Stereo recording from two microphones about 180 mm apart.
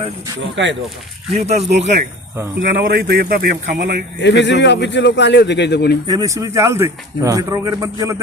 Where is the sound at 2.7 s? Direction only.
55° right (ahead or behind).